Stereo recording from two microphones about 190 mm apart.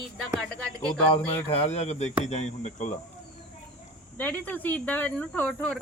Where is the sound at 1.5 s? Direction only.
35° left (ahead or behind).